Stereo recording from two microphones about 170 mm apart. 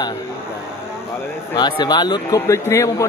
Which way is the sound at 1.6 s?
25° left (ahead or behind).